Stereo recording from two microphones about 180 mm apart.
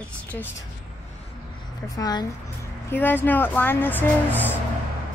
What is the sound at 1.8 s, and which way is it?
Speech, 20° left (ahead or behind).